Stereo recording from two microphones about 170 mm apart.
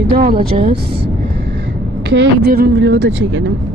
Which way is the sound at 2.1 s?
75° right (ahead or behind).